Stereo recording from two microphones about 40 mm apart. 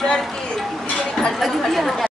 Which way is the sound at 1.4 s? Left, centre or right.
Centre.